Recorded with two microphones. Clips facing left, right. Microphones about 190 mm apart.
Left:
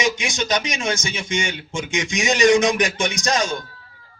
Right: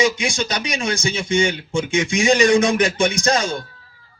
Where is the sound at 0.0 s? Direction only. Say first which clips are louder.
Right 3 dB; 20° left (ahead or behind).